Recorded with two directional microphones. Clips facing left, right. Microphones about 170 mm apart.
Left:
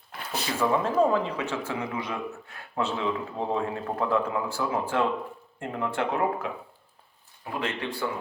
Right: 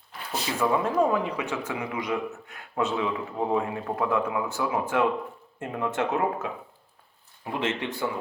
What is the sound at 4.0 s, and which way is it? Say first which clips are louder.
Speech: even; 20° right (ahead or behind).